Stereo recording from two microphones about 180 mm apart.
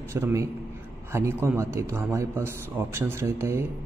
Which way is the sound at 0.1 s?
15° right (ahead or behind).